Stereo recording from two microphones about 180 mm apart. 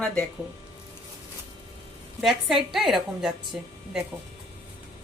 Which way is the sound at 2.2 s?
Centre (ahead or behind).